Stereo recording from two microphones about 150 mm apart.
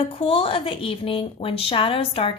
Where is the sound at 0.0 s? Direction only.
40° left (ahead or behind).